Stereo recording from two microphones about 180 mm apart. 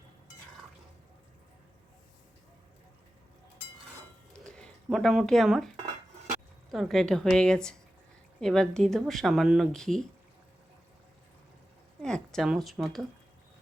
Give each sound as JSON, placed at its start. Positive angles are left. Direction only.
{"t": 4.4, "sound": "speech", "side_deg": 5}
{"t": 12.0, "sound": "speech", "side_deg": 5}